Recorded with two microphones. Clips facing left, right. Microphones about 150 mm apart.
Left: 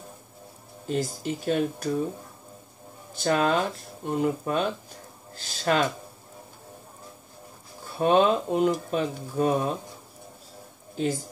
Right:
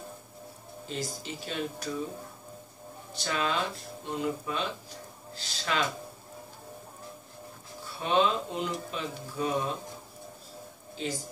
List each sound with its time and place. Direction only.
0.8 s speech: 50° left (ahead or behind)
3.2 s speech: 50° left (ahead or behind)
8.0 s speech: 50° left (ahead or behind)